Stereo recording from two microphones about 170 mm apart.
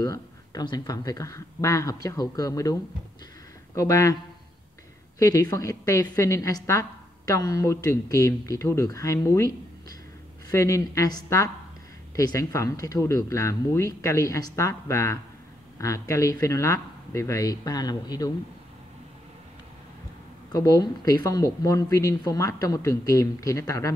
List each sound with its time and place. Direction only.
0.0 s a woman's voice: 20° left (ahead or behind)
5.2 s a woman's voice: 20° left (ahead or behind)
10.5 s a woman's voice: 20° left (ahead or behind)
20.5 s a woman's voice: 20° left (ahead or behind)